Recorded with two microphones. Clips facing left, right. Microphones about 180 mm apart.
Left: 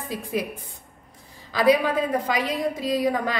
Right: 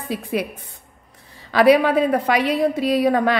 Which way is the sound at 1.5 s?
70° right (ahead or behind).